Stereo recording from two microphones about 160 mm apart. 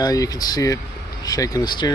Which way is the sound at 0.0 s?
20° left (ahead or behind).